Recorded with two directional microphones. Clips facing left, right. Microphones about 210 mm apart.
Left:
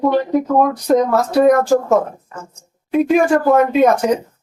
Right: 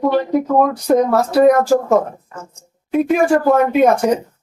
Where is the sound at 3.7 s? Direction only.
10° right (ahead or behind).